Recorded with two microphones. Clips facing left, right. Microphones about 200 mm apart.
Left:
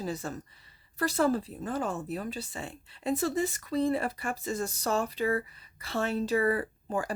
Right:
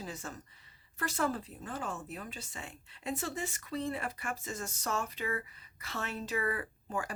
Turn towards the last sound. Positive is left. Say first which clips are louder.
# left 6 dB
turn(degrees=35)  # may be behind; listen again after turning